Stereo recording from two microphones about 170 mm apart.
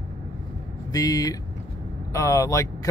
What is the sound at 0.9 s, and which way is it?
Speech, 20° left (ahead or behind).